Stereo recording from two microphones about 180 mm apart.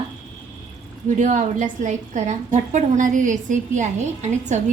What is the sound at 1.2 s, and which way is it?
A woman's voice, 45° right (ahead or behind).